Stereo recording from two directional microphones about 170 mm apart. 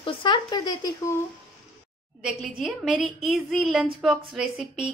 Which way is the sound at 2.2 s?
5° right (ahead or behind).